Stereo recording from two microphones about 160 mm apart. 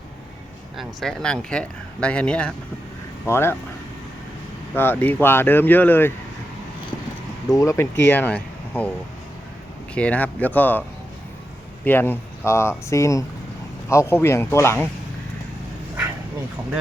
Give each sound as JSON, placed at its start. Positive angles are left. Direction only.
{"t": 0.8, "sound": "speech", "side_deg": 0}
{"t": 4.7, "sound": "speech", "side_deg": 10}
{"t": 7.5, "sound": "speech", "side_deg": 20}
{"t": 9.9, "sound": "speech", "side_deg": 10}
{"t": 11.9, "sound": "speech", "side_deg": 15}